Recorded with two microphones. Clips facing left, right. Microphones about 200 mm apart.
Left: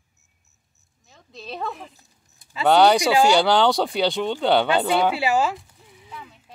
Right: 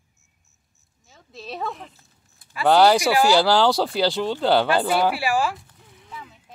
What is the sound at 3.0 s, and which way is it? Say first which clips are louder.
Speech: left 1 dB; 20° left (ahead or behind).